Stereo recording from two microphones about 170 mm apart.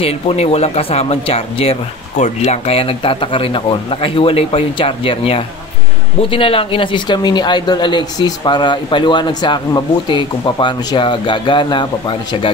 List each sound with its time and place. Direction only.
0.0 s speech: 35° left (ahead or behind)